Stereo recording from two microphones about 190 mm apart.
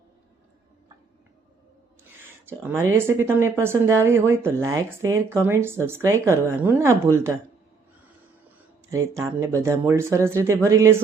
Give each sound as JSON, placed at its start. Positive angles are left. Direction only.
{"t": 2.5, "sound": "speech", "side_deg": -10}
{"t": 8.9, "sound": "speech", "side_deg": -15}